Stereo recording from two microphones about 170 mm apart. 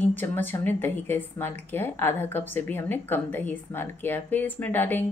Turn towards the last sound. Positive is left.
turn(degrees=10)  # may be behind; listen again after turning